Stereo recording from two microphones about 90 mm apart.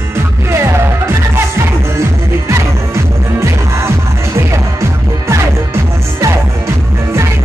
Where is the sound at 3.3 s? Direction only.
30° right (ahead or behind).